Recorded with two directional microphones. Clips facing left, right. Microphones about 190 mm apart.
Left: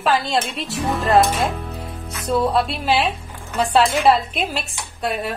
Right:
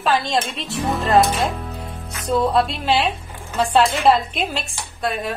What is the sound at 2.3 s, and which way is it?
Music, 5° left (ahead or behind).